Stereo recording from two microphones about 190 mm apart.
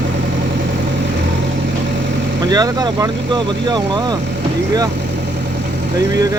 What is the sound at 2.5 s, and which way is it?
Speech, 20° right (ahead or behind).